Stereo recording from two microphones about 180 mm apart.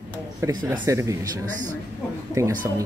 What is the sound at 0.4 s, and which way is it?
Speech, 15° right (ahead or behind).